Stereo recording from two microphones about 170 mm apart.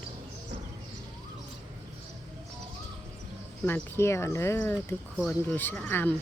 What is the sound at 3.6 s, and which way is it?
Speech, 15° left (ahead or behind).